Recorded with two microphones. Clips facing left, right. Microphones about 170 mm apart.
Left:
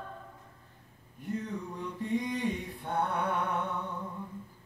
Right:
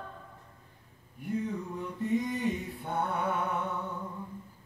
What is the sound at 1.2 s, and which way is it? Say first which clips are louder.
Mantra: right 3 dB; 10° right (ahead or behind).